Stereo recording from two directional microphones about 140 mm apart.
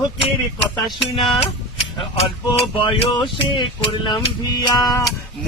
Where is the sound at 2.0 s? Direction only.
40° left (ahead or behind); by 5.0 s 25° left (ahead or behind).